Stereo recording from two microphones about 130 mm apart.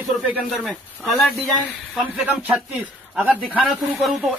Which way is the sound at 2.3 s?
15° right (ahead or behind).